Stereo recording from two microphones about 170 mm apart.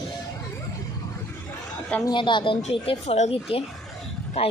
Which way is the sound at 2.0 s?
30° left (ahead or behind).